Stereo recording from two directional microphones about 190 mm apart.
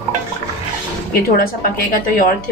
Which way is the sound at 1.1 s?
50° left (ahead or behind).